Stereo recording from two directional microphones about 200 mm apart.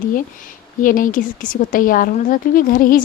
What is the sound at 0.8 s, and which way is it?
A woman's voice, 40° left (ahead or behind).